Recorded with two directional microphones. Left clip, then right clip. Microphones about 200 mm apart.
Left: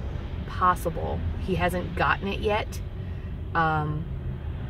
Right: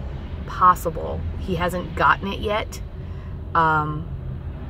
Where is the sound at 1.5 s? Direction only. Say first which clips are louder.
Right 2 dB; 15° right (ahead or behind).